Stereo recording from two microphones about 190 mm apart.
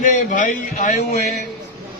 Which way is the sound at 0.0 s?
40° left (ahead or behind).